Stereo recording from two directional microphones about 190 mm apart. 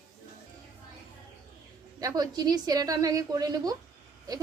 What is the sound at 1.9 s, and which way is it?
A woman's voice, 20° right (ahead or behind).